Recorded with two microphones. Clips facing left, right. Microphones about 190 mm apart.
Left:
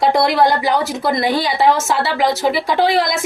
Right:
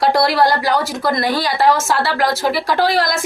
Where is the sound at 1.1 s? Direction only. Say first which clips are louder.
Left 1 dB; 20° left (ahead or behind).